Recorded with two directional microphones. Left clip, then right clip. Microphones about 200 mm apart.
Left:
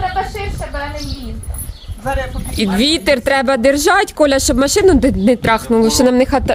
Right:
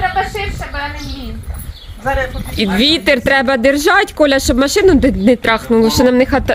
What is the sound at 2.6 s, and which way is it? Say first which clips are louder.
Speech: right 2 dB; centre (ahead or behind).